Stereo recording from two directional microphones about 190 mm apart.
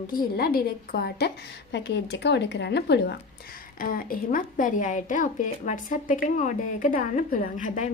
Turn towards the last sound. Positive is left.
turn(degrees=40)  # may be behind; listen again after turning